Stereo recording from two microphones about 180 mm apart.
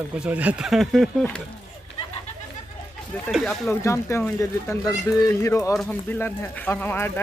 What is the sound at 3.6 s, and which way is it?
Speech, 15° left (ahead or behind).